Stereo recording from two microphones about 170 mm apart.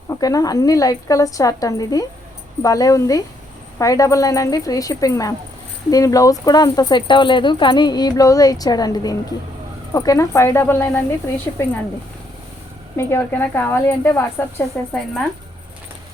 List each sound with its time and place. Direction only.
0.1 s speech: 20° left (ahead or behind)
13.0 s a woman's voice: 15° left (ahead or behind)